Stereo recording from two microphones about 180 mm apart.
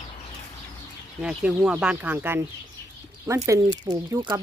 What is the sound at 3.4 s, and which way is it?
Speech, 20° right (ahead or behind).